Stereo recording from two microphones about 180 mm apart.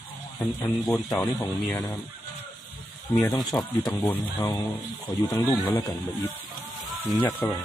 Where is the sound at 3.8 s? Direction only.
10° left (ahead or behind).